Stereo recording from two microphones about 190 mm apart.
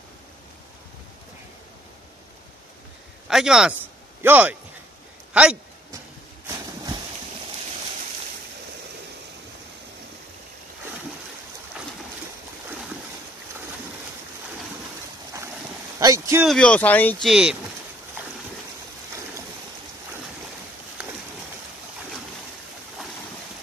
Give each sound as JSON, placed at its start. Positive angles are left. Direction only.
{"t": 3.3, "sound": "speech", "side_deg": 0}
{"t": 16.0, "sound": "vehicle", "side_deg": -15}
{"t": 16.4, "sound": "speech", "side_deg": 5}
{"t": 17.3, "sound": "speech", "side_deg": -5}